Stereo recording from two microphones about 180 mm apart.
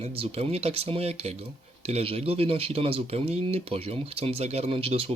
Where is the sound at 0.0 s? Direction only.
35° right (ahead or behind).